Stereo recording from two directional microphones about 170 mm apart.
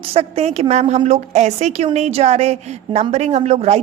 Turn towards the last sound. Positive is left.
turn(degrees=-40)  # may be behind; listen again after turning